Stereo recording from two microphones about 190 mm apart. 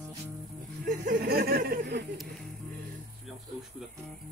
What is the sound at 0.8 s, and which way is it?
Speech, 50° right (ahead or behind).